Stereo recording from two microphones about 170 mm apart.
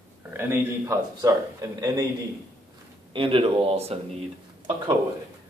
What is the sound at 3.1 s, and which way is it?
Speech, 30° right (ahead or behind).